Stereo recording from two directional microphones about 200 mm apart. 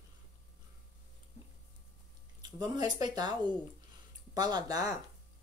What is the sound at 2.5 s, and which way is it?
Speech, 20° right (ahead or behind).